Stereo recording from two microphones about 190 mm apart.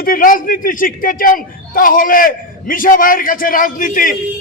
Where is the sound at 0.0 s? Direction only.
50° left (ahead or behind).